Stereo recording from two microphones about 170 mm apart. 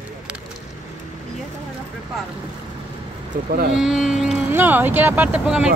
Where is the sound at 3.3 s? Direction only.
60° right (ahead or behind).